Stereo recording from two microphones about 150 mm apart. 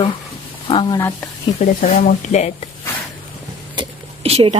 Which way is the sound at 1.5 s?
55° left (ahead or behind).